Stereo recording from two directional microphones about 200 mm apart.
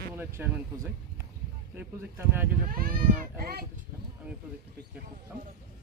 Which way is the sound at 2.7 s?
45° right (ahead or behind).